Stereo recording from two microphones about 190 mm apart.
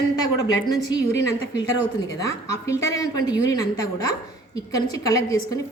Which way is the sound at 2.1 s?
20° left (ahead or behind).